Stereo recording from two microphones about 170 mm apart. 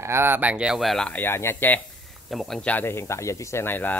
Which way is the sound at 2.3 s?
Centre (ahead or behind).